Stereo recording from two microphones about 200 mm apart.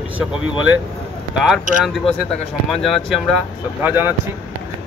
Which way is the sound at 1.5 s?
Centre (ahead or behind).